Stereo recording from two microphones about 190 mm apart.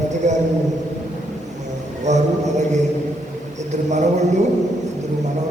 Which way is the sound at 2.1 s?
40° right (ahead or behind).